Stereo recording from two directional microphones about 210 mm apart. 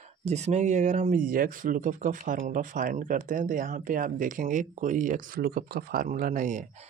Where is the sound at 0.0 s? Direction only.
30° right (ahead or behind).